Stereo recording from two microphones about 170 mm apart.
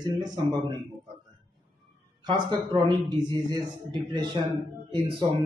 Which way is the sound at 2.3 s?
25° right (ahead or behind).